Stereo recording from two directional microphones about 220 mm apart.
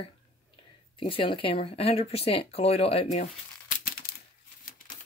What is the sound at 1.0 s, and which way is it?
Speech, 25° left (ahead or behind).